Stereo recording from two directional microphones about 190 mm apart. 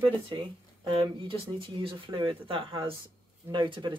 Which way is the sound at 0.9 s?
25° right (ahead or behind).